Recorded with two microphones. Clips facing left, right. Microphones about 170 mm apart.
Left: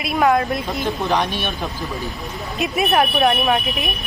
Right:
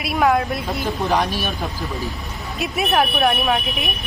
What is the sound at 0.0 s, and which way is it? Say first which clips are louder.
Speech: left 1 dB; centre (ahead or behind).